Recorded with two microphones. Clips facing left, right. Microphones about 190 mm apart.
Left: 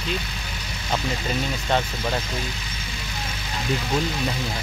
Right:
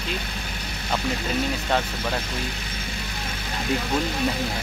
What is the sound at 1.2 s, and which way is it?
Speech, 5° right (ahead or behind).